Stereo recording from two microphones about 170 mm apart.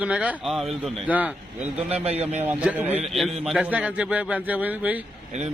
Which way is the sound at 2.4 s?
10° right (ahead or behind).